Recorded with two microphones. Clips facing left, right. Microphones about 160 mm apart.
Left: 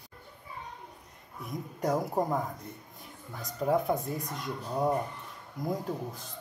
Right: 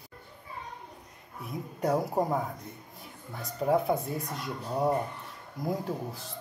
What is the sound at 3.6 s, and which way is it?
A child's voice, 5° right (ahead or behind).